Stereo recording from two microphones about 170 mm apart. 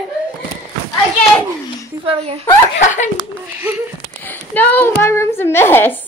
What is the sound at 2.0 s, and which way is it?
Speech, 35° right (ahead or behind).